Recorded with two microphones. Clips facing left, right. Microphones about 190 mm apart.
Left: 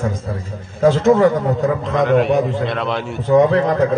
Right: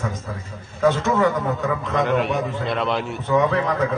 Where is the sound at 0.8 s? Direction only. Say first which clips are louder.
Left 6 dB; 35° left (ahead or behind).